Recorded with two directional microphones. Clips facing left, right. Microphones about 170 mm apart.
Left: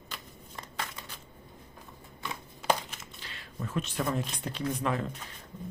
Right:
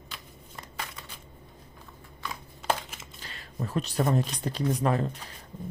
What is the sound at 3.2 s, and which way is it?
Speech, 40° right (ahead or behind).